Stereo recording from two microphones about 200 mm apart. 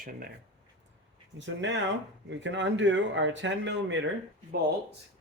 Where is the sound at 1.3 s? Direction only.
65° right (ahead or behind).